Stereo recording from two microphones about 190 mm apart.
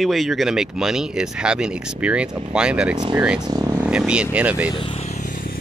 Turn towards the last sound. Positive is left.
turn(degrees=45)  # may be behind; listen again after turning